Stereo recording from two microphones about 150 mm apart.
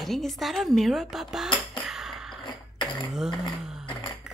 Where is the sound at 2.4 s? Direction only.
30° left (ahead or behind).